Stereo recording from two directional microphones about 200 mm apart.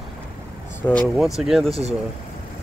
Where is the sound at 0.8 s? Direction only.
Centre (ahead or behind).